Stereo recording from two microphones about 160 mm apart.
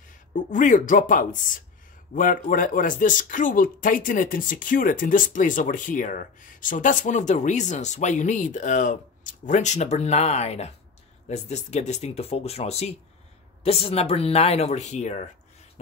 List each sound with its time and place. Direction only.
0.3 s a woman's voice: 55° left (ahead or behind)